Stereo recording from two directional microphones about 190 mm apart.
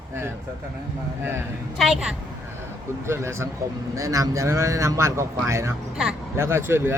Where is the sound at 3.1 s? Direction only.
15° right (ahead or behind).